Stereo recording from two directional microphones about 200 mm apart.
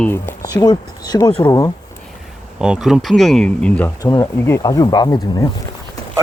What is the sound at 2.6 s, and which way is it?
Speech, 5° right (ahead or behind).